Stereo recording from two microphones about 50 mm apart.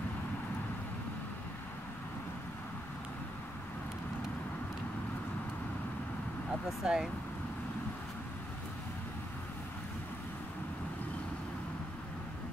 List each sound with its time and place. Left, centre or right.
6.8 s speech: centre